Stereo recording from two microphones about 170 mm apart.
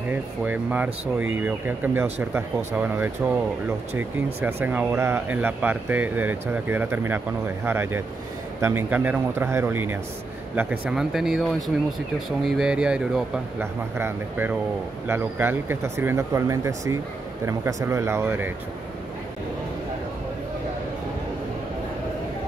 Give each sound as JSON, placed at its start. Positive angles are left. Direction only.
{"t": 0.1, "sound": "speech", "side_deg": -10}
{"t": 4.4, "sound": "speech", "side_deg": -10}